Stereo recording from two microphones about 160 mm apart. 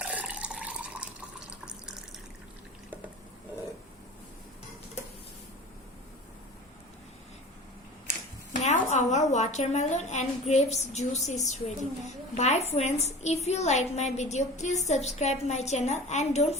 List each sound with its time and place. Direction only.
0.0 s water: 10° right (ahead or behind)
1.5 s water tap: 5° right (ahead or behind)
8.6 s a woman's voice: 45° left (ahead or behind)